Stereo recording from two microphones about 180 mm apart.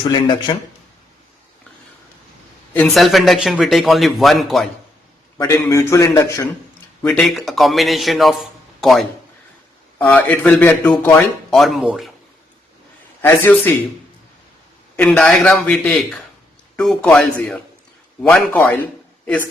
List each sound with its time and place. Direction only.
0.1 s speech: 25° left (ahead or behind)
2.7 s a man's voice: centre (ahead or behind)
5.4 s a man's voice: 15° left (ahead or behind)
7.1 s a man's voice: centre (ahead or behind)
13.2 s a man's voice: 10° left (ahead or behind)
14.9 s a man's voice: 5° left (ahead or behind)